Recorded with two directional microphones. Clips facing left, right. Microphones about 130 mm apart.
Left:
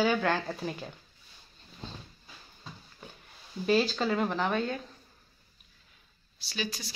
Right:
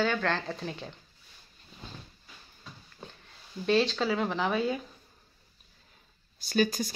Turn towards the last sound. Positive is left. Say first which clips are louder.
# right 10 dB
turn(degrees=-50)  # may be behind; listen again after turning